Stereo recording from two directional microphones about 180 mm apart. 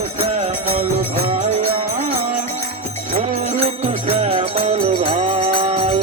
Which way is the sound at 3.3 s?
35° right (ahead or behind).